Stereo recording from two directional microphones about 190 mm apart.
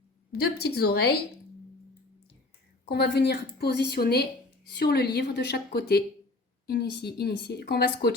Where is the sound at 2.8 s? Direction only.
60° left (ahead or behind).